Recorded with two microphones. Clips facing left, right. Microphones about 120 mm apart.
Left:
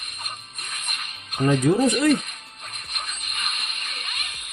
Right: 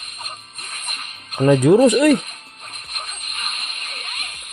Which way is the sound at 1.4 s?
70° right (ahead or behind).